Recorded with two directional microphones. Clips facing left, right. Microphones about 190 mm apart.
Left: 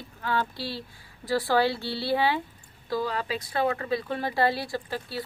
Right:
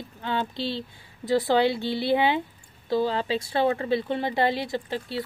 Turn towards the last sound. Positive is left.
turn(degrees=-25)  # may be behind; listen again after turning